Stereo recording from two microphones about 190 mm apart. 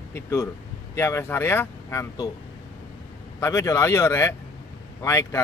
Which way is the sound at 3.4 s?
15° left (ahead or behind).